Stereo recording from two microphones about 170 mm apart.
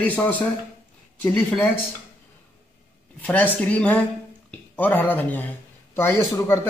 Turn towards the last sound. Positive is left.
turn(degrees=15)  # may be behind; listen again after turning